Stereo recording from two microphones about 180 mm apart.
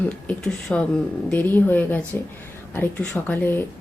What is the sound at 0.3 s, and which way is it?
Speech, 5° left (ahead or behind).